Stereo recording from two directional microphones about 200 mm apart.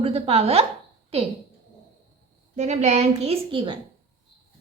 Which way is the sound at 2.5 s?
35° right (ahead or behind).